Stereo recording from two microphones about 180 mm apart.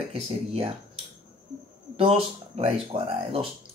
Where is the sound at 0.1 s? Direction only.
30° right (ahead or behind).